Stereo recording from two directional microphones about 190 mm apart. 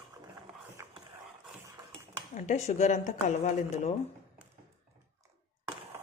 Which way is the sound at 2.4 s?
35° left (ahead or behind).